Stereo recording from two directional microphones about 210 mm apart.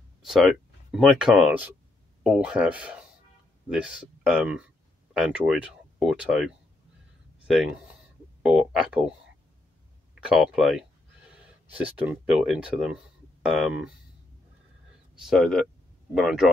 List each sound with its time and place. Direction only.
0.2 s speech: centre (ahead or behind)
10.3 s speech: centre (ahead or behind)
15.1 s speech: centre (ahead or behind)